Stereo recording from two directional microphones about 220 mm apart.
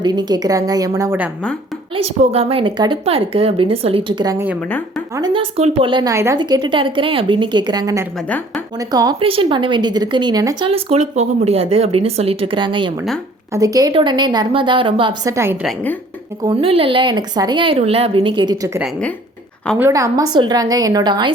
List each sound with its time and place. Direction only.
0.0 s a woman's voice: 20° right (ahead or behind)
2.2 s a woman's voice: 25° right (ahead or behind)
15.6 s a woman's voice: 10° left (ahead or behind)
16.4 s a woman's voice: 25° right (ahead or behind)
18.8 s a woman's voice: 5° left (ahead or behind)
19.8 s a woman's voice: 15° right (ahead or behind)